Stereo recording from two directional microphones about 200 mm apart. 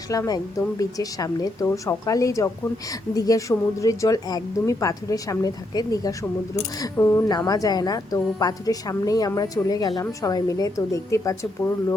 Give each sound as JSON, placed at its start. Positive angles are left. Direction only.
{"t": 0.1, "sound": "a woman's voice", "side_deg": 15}